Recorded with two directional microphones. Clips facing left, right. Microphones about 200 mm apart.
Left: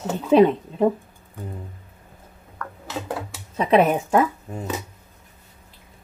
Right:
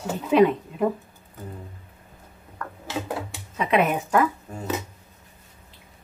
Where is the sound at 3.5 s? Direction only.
35° left (ahead or behind).